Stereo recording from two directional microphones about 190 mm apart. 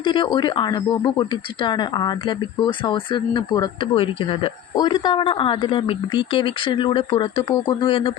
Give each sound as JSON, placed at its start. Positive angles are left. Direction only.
{"t": 0.0, "sound": "speech", "side_deg": 25}